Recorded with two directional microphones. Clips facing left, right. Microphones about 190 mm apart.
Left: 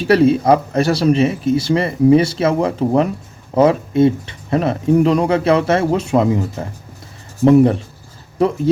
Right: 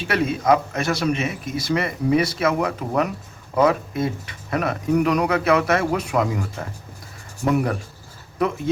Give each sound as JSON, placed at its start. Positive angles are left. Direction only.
{"t": 0.0, "sound": "speech", "side_deg": 35}